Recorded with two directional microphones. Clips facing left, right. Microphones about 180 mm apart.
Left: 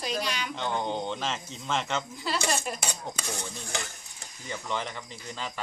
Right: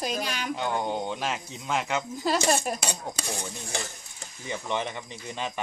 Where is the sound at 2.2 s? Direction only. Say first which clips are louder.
Right 8 dB; 45° right (ahead or behind).